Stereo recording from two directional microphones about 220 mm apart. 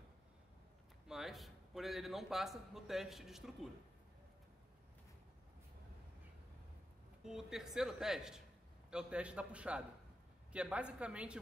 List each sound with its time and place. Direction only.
1.0 s a man's voice: centre (ahead or behind)
7.2 s speech: centre (ahead or behind)